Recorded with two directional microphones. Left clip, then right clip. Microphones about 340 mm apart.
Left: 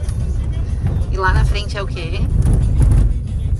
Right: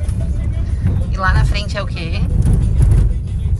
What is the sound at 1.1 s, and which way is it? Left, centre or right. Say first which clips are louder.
Speech: even; centre.